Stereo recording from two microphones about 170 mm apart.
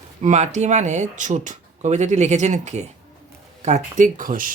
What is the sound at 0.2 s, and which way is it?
Speech, 45° right (ahead or behind).